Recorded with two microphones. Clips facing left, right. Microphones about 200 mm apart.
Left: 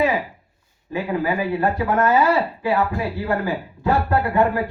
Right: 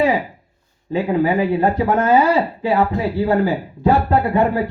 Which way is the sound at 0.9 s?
25° right (ahead or behind).